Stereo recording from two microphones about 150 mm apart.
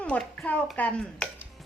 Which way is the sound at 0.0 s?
10° left (ahead or behind).